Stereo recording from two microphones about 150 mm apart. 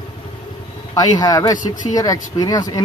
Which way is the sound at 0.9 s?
25° left (ahead or behind).